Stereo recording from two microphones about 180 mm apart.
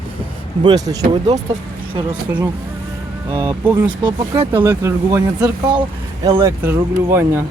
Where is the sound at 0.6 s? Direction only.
20° right (ahead or behind).